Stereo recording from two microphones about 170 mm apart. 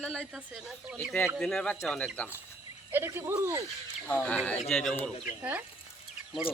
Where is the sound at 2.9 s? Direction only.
15° right (ahead or behind).